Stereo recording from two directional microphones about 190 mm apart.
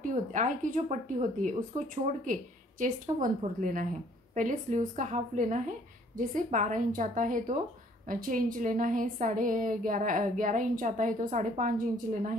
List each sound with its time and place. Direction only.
0.0 s a woman's voice: 40° right (ahead or behind)